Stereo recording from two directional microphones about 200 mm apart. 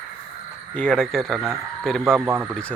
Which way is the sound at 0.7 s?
5° left (ahead or behind).